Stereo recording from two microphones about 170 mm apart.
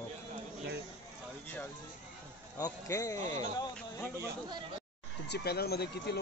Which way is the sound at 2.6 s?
20° left (ahead or behind).